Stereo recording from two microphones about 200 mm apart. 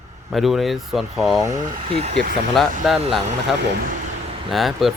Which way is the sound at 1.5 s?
30° right (ahead or behind).